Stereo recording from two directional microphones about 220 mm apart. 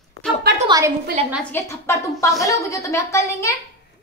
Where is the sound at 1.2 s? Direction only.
30° right (ahead or behind).